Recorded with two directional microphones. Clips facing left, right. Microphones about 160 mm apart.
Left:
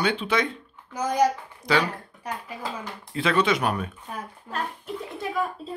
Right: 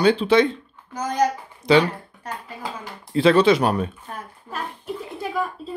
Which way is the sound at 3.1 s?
30° right (ahead or behind).